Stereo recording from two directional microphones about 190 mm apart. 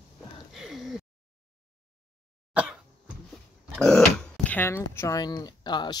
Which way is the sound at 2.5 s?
5° right (ahead or behind).